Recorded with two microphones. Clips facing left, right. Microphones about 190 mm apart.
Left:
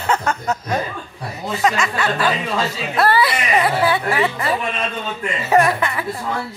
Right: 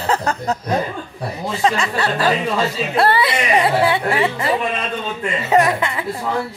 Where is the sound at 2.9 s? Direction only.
25° right (ahead or behind).